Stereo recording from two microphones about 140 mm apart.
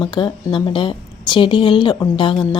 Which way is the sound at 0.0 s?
35° left (ahead or behind).